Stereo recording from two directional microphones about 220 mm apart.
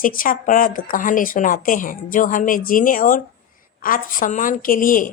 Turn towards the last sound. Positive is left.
turn(degrees=40)  # may be behind; listen again after turning